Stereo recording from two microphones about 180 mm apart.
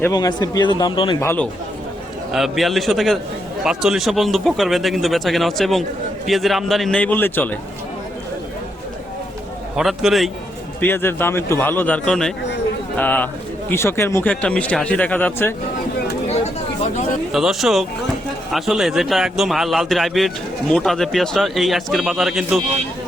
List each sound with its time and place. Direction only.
0.0 s speech: 20° left (ahead or behind)
1.2 s speech: 15° left (ahead or behind)
2.3 s a man's voice: centre (ahead or behind)
9.7 s a man's voice: centre (ahead or behind)
10.8 s speech: 10° left (ahead or behind)
16.2 s a sound: 35° left (ahead or behind)
17.3 s a man's voice: centre (ahead or behind)